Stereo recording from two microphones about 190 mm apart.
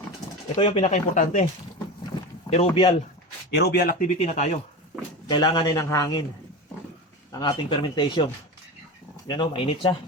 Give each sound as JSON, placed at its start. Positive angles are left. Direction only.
{"t": 0.5, "sound": "speech", "side_deg": 30}
{"t": 2.5, "sound": "speech", "side_deg": 30}
{"t": 3.5, "sound": "speech", "side_deg": 60}
{"t": 4.2, "sound": "speech", "side_deg": 35}
{"t": 5.3, "sound": "speech", "side_deg": 20}
{"t": 7.3, "sound": "speech", "side_deg": 25}